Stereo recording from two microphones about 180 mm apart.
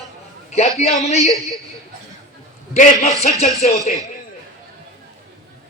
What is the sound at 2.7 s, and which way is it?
Speech, 40° left (ahead or behind).